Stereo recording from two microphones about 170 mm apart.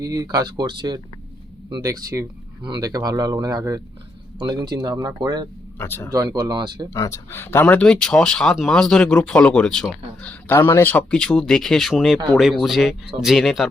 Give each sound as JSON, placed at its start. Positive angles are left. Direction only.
{"t": 0.0, "sound": "speech", "side_deg": -20}
{"t": 5.8, "sound": "speech", "side_deg": 15}
{"t": 6.1, "sound": "speech", "side_deg": -20}
{"t": 6.9, "sound": "speech", "side_deg": 20}